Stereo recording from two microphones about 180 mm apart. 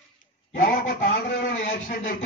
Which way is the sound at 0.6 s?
50° left (ahead or behind).